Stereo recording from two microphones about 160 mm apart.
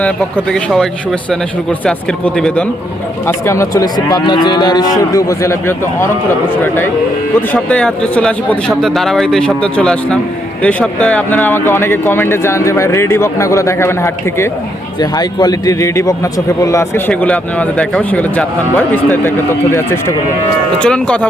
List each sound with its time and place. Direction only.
0.5 s speech: centre (ahead or behind)
3.2 s cattle: 15° left (ahead or behind)
7.5 s speech: 5° left (ahead or behind)
15.1 s cattle: 25° left (ahead or behind)
17.1 s speech: 10° left (ahead or behind)
20.7 s speech: 5° left (ahead or behind)